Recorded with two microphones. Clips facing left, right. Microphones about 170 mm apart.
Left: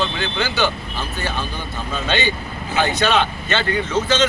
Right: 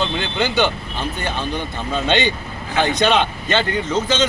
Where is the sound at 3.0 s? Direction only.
15° right (ahead or behind).